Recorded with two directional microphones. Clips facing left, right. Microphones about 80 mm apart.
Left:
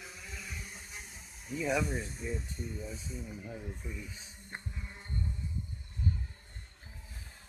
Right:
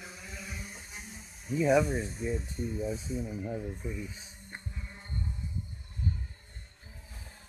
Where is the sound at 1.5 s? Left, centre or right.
Centre.